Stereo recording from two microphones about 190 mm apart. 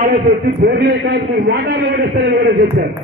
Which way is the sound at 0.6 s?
60° right (ahead or behind).